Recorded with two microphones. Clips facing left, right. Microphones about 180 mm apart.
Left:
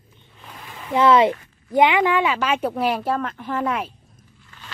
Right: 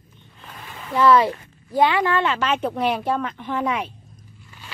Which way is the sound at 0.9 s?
20° left (ahead or behind).